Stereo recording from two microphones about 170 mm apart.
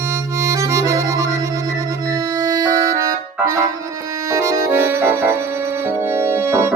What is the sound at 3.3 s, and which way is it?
Accordion, 15° right (ahead or behind).